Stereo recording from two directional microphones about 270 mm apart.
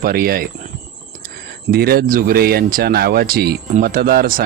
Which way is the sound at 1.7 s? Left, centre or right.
Right.